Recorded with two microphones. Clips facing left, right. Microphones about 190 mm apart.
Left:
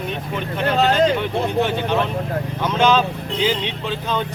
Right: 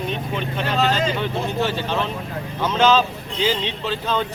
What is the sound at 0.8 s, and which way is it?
Speech, 60° left (ahead or behind).